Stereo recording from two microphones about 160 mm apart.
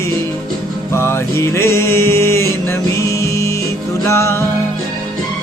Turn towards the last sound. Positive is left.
turn(degrees=15)  # may be behind; listen again after turning